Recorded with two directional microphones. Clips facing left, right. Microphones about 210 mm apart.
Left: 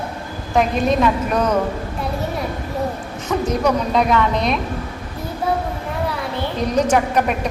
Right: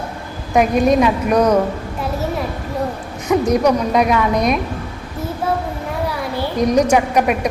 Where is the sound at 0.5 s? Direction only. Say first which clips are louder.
Right 4 dB; 15° right (ahead or behind).